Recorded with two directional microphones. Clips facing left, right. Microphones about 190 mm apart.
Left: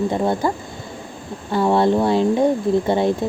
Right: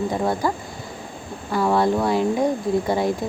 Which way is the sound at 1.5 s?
25° left (ahead or behind).